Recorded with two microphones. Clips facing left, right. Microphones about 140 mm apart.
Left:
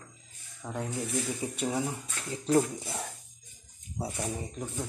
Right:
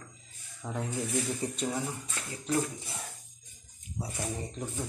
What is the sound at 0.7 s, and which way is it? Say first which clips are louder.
Speech: even; 5° left (ahead or behind).